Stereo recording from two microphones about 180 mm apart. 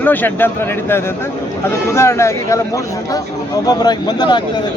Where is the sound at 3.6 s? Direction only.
25° left (ahead or behind).